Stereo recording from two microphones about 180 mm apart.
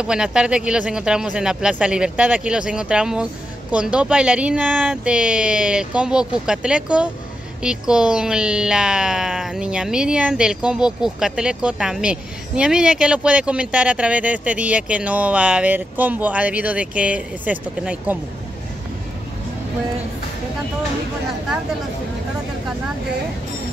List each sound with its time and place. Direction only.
0.0 s speech: 5° right (ahead or behind)